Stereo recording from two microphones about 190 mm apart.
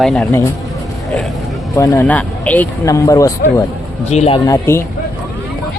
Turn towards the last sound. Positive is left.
turn(degrees=15)  # may be behind; listen again after turning